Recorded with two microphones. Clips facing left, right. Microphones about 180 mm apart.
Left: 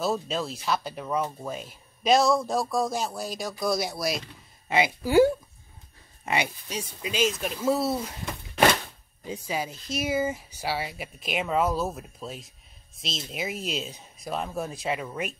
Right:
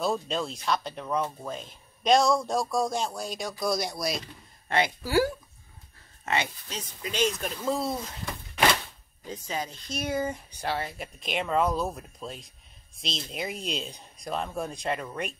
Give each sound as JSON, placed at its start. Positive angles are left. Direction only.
{"t": 0.0, "sound": "speech", "side_deg": 5}
{"t": 5.0, "sound": "speech", "side_deg": 20}
{"t": 9.3, "sound": "speech", "side_deg": 10}